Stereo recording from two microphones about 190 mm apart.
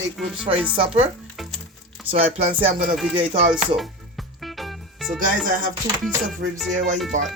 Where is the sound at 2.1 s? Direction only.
30° right (ahead or behind).